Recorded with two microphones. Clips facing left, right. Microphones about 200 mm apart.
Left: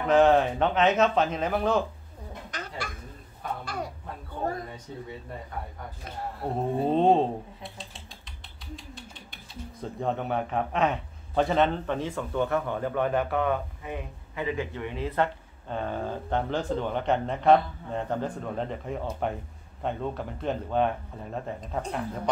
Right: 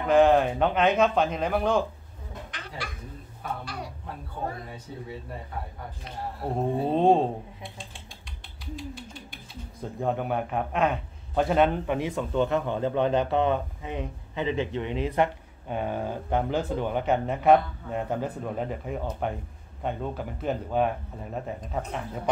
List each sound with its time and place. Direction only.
0.0 s speech: centre (ahead or behind)
2.5 s a sound: 45° left (ahead or behind)
6.9 s speech: centre (ahead or behind)
8.7 s speech: centre (ahead or behind)